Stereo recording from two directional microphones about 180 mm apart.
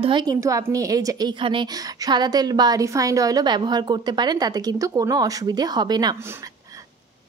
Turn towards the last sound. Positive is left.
turn(degrees=-25)  # may be behind; listen again after turning